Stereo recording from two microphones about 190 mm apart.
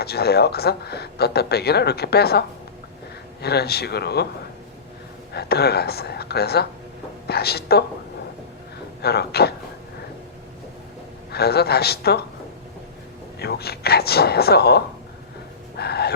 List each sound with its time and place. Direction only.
0.0 s speech: 55° left (ahead or behind)
3.4 s speech: 55° left (ahead or behind)
5.3 s speech: 60° left (ahead or behind)
9.0 s speech: 55° left (ahead or behind)
11.3 s speech: 55° left (ahead or behind)
13.4 s speech: 55° left (ahead or behind)